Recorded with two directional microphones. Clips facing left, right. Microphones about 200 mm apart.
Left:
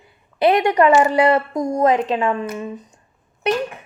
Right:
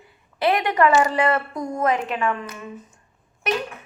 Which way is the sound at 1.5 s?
45° left (ahead or behind).